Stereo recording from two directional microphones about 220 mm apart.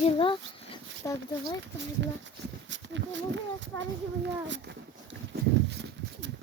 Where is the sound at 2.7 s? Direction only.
55° right (ahead or behind).